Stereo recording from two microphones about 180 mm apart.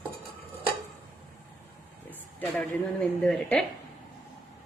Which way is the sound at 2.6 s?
5° left (ahead or behind).